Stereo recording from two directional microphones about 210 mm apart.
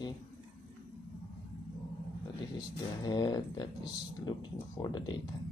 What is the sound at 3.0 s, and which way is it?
Speech, 20° left (ahead or behind).